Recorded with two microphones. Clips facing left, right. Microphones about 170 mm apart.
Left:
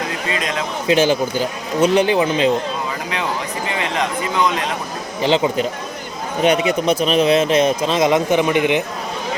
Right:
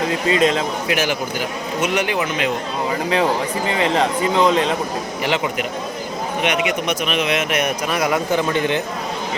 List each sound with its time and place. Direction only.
0.3 s speech: 30° right (ahead or behind)
0.9 s speech: 30° left (ahead or behind)
3.7 s speech: 30° right (ahead or behind)
5.2 s a man's voice: 30° left (ahead or behind)